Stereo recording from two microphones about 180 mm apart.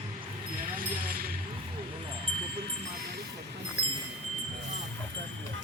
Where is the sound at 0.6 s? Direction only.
50° right (ahead or behind).